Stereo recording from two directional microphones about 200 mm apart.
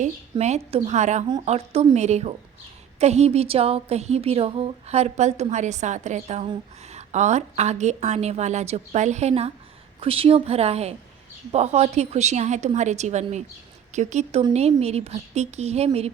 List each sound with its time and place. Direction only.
0.0 s a woman's voice: 35° right (ahead or behind)